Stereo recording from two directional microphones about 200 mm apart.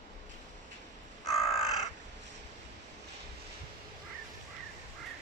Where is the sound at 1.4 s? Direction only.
30° left (ahead or behind).